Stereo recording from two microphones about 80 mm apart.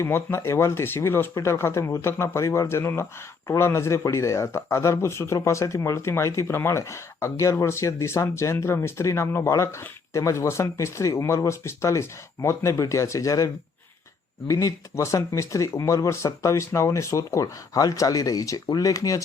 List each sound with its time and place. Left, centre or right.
0.0 s speech: left